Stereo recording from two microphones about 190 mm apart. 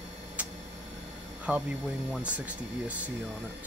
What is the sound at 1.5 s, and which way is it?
Speech, 5° right (ahead or behind).